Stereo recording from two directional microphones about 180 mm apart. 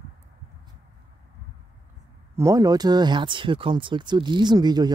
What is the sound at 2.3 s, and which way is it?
Speech, 20° right (ahead or behind).